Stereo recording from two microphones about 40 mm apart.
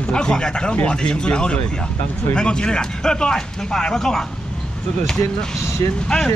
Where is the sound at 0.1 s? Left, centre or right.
Left.